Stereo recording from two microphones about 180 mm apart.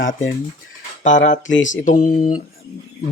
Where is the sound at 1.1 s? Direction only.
45° left (ahead or behind).